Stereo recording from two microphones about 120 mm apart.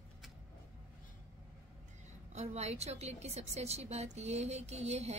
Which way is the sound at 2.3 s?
65° right (ahead or behind).